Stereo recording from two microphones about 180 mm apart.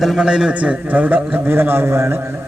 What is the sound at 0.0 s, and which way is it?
A man's voice, 5° right (ahead or behind).